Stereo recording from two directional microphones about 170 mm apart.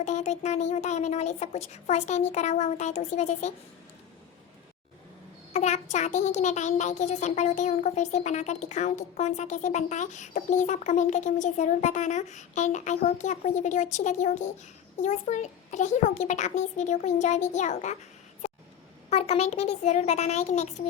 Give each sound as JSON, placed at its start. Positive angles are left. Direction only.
{"t": 0.0, "sound": "speech", "side_deg": 40}
{"t": 5.5, "sound": "a child's voice", "side_deg": 40}
{"t": 19.1, "sound": "speech", "side_deg": 40}